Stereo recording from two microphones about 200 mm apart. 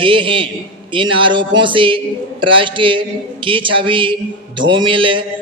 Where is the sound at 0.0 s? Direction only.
25° right (ahead or behind).